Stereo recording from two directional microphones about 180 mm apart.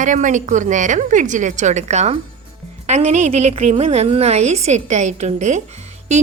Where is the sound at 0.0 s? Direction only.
45° right (ahead or behind).